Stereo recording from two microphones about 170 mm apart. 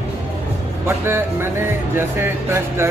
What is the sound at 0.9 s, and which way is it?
Speech, 15° right (ahead or behind).